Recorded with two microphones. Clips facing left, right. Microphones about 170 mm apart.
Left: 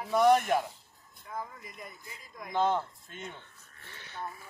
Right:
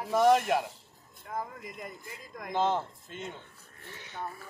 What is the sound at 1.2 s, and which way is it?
Speech, 55° right (ahead or behind).